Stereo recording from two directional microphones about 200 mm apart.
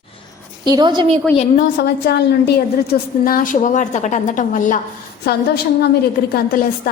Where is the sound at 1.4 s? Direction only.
45° left (ahead or behind).